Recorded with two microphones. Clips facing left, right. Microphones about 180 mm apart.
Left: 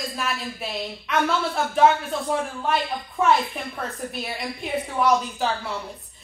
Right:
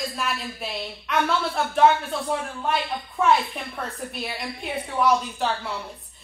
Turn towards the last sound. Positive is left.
turn(degrees=0)  # may be behind; listen again after turning